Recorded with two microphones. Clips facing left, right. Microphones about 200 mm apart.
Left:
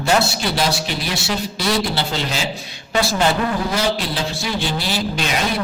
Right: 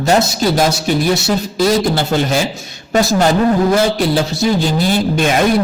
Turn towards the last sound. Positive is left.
turn(degrees=-50)  # may be behind; listen again after turning